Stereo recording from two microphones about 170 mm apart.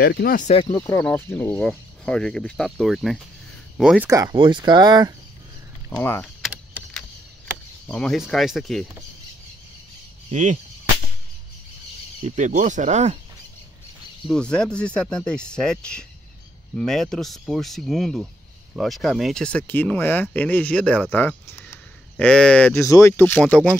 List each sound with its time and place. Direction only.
0.0 s speech: 70° left (ahead or behind)
0.7 s speech: 15° left (ahead or behind); by 4.1 s 5° right (ahead or behind)
4.1 s speech: 25° right (ahead or behind)
5.9 s speech: 15° left (ahead or behind)
6.2 s power windows: centre (ahead or behind)
7.8 s speech: 5° left (ahead or behind)
10.3 s speech: 45° right (ahead or behind)
12.4 s speech: 45° right (ahead or behind)
14.2 s speech: 5° left (ahead or behind)